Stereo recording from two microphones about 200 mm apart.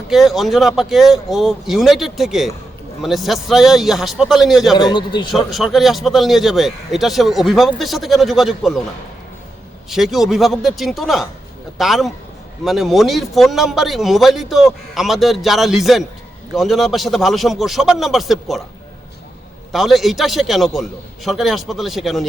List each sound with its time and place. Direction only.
0.1 s a man's voice: centre (ahead or behind)
4.8 s a man's voice: 20° left (ahead or behind)
5.3 s a man's voice: centre (ahead or behind)
9.9 s a man's voice: centre (ahead or behind)
19.7 s a man's voice: centre (ahead or behind)